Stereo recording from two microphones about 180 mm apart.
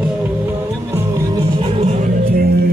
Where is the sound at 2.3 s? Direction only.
60° right (ahead or behind).